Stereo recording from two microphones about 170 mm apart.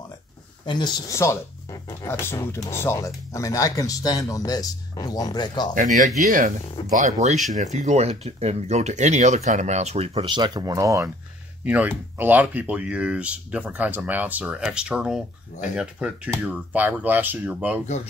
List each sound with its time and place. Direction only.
0.7 s speech: 25° left (ahead or behind)
5.8 s speech: 50° right (ahead or behind); by 11.1 s 20° right (ahead or behind)
11.6 s speech: 10° right (ahead or behind)